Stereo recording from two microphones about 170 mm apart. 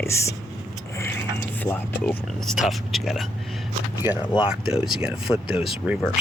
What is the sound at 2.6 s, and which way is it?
Speech, centre (ahead or behind).